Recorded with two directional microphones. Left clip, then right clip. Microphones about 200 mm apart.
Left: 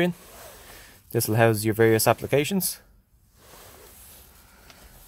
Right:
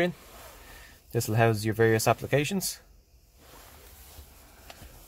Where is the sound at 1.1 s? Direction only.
25° left (ahead or behind).